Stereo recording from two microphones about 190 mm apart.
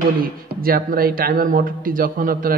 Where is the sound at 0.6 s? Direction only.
50° right (ahead or behind).